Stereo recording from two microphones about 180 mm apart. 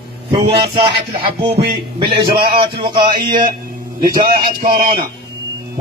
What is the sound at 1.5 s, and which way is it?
Music, 65° right (ahead or behind).